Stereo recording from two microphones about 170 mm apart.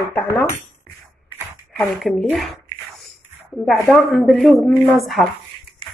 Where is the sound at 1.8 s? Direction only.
5° left (ahead or behind).